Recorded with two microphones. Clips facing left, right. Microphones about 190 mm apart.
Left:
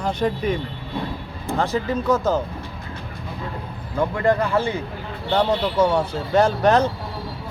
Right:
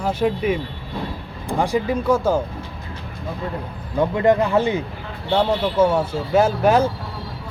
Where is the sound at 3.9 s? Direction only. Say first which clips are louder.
Right 3 dB; 20° right (ahead or behind).